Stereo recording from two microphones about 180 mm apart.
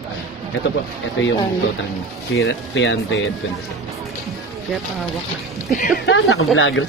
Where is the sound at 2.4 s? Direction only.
90° left.